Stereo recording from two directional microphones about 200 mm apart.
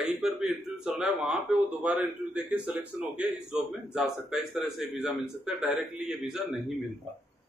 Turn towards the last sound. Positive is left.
turn(degrees=0)  # may be behind; listen again after turning